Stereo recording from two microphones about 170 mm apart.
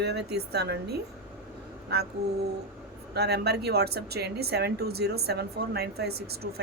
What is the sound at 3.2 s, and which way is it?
Speech, 75° right (ahead or behind).